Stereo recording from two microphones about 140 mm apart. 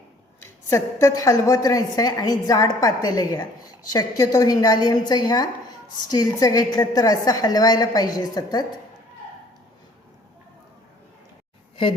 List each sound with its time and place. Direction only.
0.4 s a woman's voice: 20° left (ahead or behind)